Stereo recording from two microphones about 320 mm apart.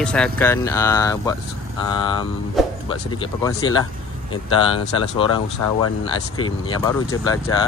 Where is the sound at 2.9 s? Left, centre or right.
Centre.